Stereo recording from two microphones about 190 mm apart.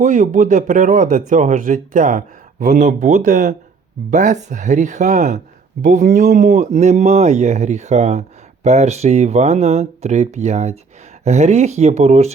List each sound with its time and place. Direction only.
0.0 s speech: 40° right (ahead or behind)